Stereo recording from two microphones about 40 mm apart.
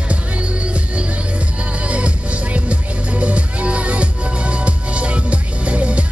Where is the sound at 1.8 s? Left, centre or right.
Right.